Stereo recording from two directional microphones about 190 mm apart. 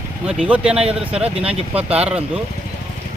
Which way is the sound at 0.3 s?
5° right (ahead or behind).